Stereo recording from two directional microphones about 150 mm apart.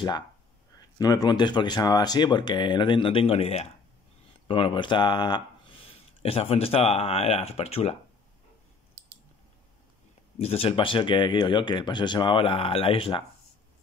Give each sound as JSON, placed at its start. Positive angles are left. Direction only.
{"t": 0.7, "sound": "speech", "side_deg": 25}
{"t": 10.4, "sound": "speech", "side_deg": 40}